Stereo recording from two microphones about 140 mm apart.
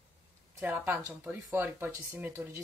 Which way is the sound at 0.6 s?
15° right (ahead or behind).